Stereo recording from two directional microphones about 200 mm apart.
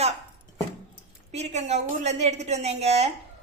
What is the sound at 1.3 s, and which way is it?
A woman's voice, 35° right (ahead or behind).